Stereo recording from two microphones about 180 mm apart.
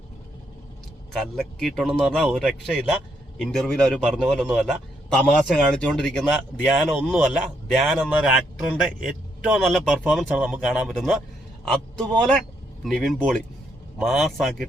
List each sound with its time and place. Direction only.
1.1 s speech: centre (ahead or behind)